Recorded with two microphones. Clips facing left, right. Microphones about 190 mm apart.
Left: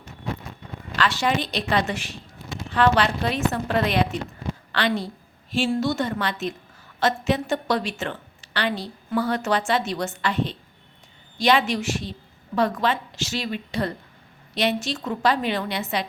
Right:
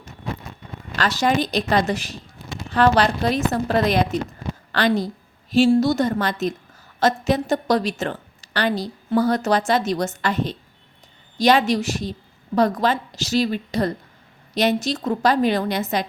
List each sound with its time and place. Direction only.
0.9 s a woman's voice: 40° right (ahead or behind)